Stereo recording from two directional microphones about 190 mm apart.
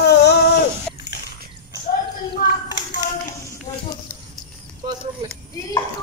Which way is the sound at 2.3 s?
45° left (ahead or behind).